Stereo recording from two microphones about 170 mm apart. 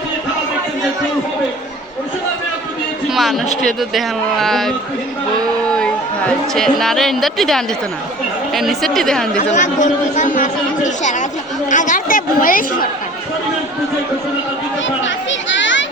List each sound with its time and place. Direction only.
3.1 s a sound: centre (ahead or behind)
3.7 s a woman's voice: centre (ahead or behind)
9.4 s a man's voice: 45° left (ahead or behind)
15.0 s children playing: 90° left